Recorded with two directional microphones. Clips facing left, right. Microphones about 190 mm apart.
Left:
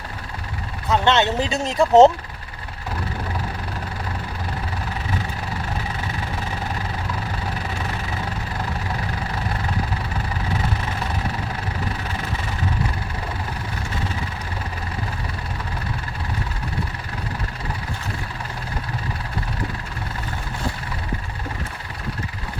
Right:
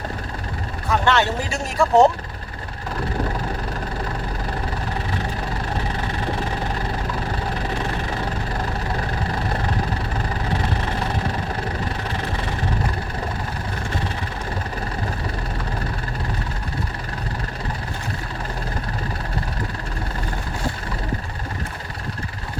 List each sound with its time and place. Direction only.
0.9 s speech: 20° left (ahead or behind)